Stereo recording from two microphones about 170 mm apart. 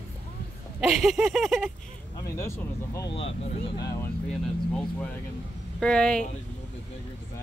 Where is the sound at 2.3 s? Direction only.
15° left (ahead or behind).